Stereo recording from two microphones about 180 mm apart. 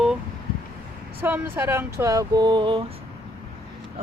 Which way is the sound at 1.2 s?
10° right (ahead or behind).